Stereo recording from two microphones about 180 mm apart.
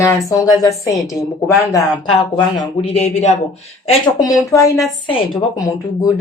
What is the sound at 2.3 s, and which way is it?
Speech, 30° left (ahead or behind).